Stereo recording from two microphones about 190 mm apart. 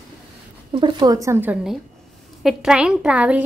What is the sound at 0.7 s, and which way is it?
A woman's voice, 20° right (ahead or behind).